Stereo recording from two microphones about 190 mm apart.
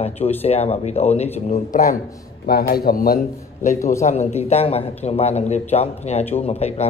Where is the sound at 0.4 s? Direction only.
30° left (ahead or behind).